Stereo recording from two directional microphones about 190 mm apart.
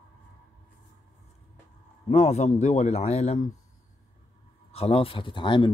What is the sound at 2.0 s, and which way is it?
Speech, 35° left (ahead or behind).